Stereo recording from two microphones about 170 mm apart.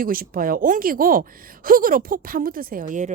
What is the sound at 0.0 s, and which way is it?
A woman's voice, 55° right (ahead or behind).